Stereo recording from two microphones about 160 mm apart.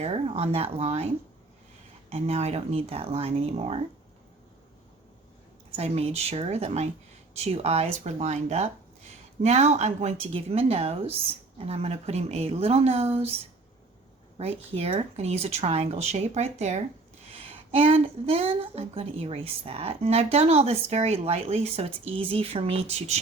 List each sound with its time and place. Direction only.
0.0 s a woman's voice: 40° right (ahead or behind)
5.7 s a woman's voice: 40° right (ahead or behind)
14.3 s a woman's voice: 40° right (ahead or behind)